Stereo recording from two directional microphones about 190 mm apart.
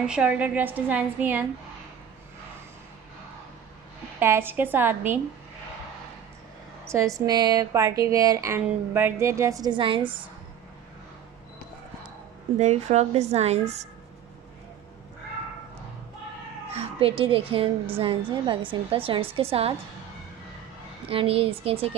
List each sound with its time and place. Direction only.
0.0 s a woman's voice: 5° right (ahead or behind)
4.2 s a woman's voice: 10° right (ahead or behind)
6.9 s a woman's voice: 15° right (ahead or behind)
12.5 s a woman's voice: 35° right (ahead or behind)
16.7 s a woman's voice: 30° right (ahead or behind)
21.1 s a woman's voice: 30° right (ahead or behind)